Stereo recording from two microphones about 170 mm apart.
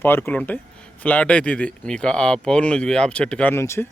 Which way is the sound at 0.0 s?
10° left (ahead or behind).